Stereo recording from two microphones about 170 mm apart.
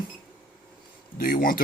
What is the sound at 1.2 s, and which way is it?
Speech, 55° left (ahead or behind).